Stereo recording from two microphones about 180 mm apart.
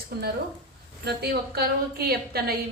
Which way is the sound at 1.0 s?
65° right (ahead or behind).